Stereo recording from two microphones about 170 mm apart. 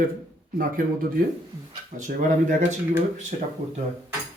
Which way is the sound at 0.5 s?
60° right (ahead or behind).